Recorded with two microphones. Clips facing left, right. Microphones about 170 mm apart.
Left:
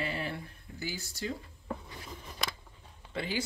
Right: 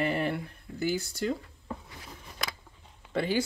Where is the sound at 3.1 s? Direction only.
55° right (ahead or behind).